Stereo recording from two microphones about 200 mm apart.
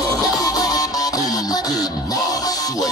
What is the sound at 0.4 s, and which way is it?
Music, 20° left (ahead or behind).